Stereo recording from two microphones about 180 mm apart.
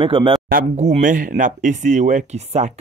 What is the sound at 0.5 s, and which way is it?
Speech, 40° right (ahead or behind).